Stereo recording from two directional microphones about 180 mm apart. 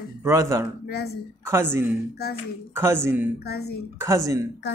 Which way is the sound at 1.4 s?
15° right (ahead or behind).